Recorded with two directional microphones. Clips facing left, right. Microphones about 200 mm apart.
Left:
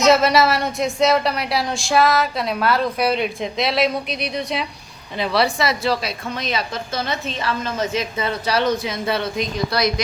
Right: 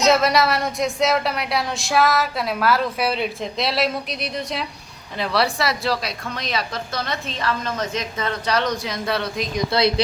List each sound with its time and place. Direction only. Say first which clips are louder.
0.1 s a woman's voice: left 3 dB; centre (ahead or behind)
9.7 s a woman's voice: right 2 dB; 25° right (ahead or behind)